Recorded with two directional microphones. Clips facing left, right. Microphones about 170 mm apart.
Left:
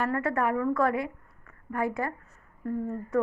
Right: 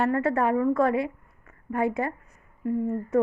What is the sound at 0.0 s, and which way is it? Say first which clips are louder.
A woman's voice: right 4 dB; 25° right (ahead or behind).